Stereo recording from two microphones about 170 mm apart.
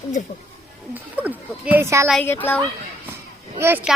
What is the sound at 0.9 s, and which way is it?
Speech, 10° right (ahead or behind).